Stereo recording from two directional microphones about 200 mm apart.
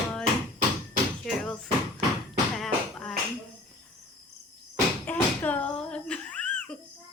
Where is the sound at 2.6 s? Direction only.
Centre (ahead or behind).